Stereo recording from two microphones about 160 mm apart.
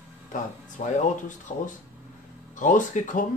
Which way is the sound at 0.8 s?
45° left (ahead or behind).